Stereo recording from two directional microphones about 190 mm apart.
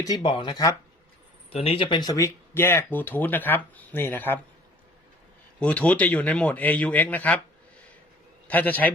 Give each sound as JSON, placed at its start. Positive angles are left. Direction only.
{"t": 0.0, "sound": "speech", "side_deg": 20}
{"t": 1.5, "sound": "speech", "side_deg": 30}
{"t": 5.5, "sound": "speech", "side_deg": 5}
{"t": 8.4, "sound": "speech", "side_deg": 10}